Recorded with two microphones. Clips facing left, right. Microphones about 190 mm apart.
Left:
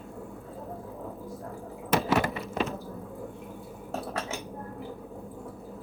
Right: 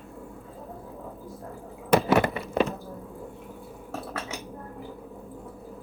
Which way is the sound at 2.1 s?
60° right (ahead or behind).